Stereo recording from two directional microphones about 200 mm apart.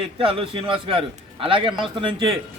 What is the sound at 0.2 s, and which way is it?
A man's voice, 25° right (ahead or behind).